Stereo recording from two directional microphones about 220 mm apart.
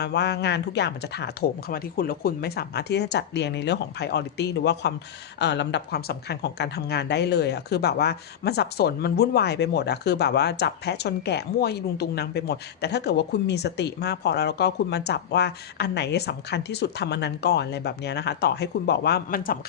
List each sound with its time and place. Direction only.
0.0 s speech: 50° left (ahead or behind)